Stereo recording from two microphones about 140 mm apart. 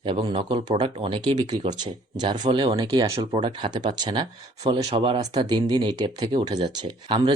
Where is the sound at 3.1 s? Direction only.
40° right (ahead or behind).